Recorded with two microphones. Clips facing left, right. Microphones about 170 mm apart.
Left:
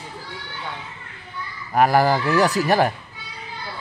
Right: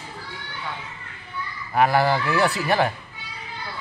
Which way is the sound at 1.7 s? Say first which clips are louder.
Left 2 dB; 40° left (ahead or behind).